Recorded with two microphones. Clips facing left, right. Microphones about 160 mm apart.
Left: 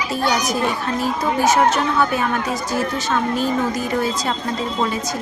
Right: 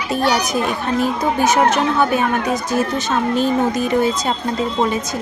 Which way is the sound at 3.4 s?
20° right (ahead or behind).